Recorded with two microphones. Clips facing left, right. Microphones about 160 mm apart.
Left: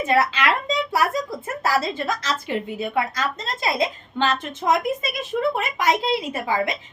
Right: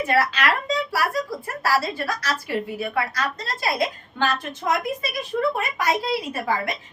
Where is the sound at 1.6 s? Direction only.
20° left (ahead or behind).